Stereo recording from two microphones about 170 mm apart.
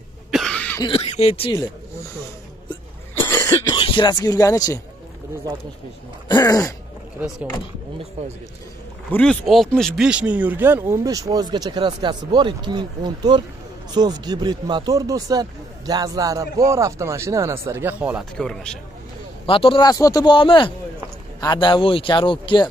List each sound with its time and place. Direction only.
0.3 s cough: centre (ahead or behind)
0.7 s speech: 30° left (ahead or behind)
3.2 s cough: 15° left (ahead or behind)
3.7 s speech: 30° left (ahead or behind)
6.2 s a man's voice: 20° left (ahead or behind)
9.1 s speech: 5° left (ahead or behind)
18.4 s speech: 5° left (ahead or behind)
19.4 s a man's voice: 30° left (ahead or behind)